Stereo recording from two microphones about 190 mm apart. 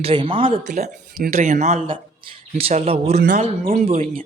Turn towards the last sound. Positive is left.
turn(degrees=-30)  # may be behind; listen again after turning